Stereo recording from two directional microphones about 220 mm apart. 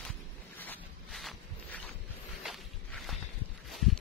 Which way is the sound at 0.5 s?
5° left (ahead or behind).